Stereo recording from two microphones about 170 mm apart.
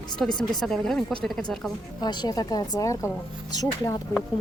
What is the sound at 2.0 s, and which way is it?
Speech, 25° left (ahead or behind).